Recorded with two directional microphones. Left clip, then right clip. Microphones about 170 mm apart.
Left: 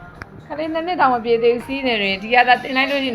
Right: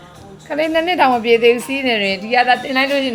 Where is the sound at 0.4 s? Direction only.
70° right (ahead or behind).